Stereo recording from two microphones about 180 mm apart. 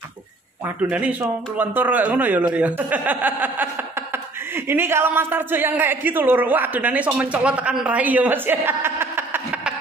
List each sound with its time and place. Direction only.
0.8 s speech: 5° right (ahead or behind)